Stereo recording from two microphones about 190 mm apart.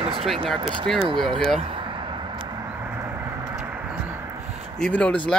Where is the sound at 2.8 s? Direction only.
10° right (ahead or behind).